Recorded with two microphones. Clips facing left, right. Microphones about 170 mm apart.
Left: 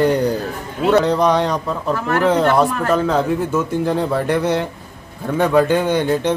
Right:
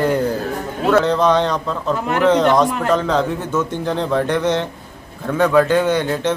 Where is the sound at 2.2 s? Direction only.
10° left (ahead or behind).